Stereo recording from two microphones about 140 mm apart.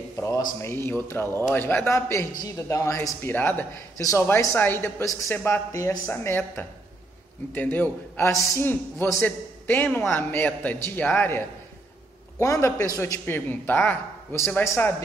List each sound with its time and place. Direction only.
0.6 s a man's voice: 20° left (ahead or behind)